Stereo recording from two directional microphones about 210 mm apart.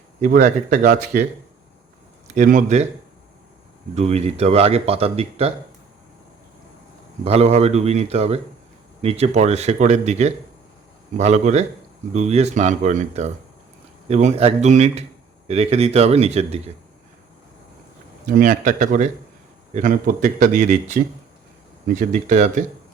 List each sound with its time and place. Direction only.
0.2 s speech: 35° right (ahead or behind)
2.2 s speech: 35° right (ahead or behind)
3.9 s speech: 30° right (ahead or behind)
7.3 s speech: 30° right (ahead or behind)
18.3 s speech: 40° right (ahead or behind)